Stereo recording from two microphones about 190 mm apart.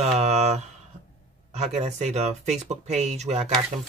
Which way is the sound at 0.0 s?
35° right (ahead or behind).